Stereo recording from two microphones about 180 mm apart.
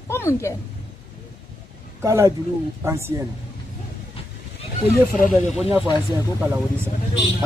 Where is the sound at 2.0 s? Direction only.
15° right (ahead or behind).